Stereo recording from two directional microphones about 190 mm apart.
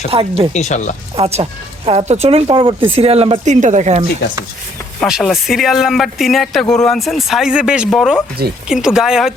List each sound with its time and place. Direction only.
0.1 s speech: 30° right (ahead or behind)
0.5 s speech: 40° left (ahead or behind)
1.1 s speech: 30° right (ahead or behind)
4.9 s speech: centre (ahead or behind)